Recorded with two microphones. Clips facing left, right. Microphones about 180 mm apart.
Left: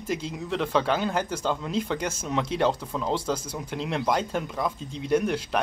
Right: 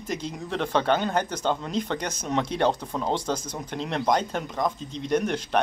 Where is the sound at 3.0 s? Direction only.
5° left (ahead or behind).